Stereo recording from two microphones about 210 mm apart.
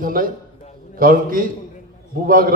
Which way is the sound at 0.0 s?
40° right (ahead or behind).